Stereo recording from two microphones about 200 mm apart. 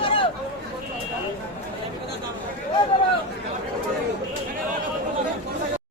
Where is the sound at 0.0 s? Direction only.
25° left (ahead or behind).